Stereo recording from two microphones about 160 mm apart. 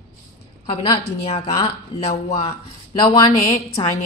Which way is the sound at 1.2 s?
40° left (ahead or behind).